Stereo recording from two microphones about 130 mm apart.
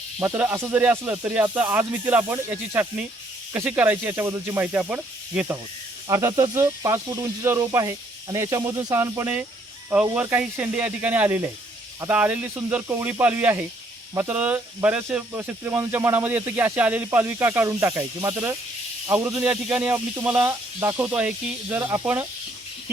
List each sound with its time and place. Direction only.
0.2 s speech: 15° right (ahead or behind)
6.1 s speech: 25° right (ahead or behind)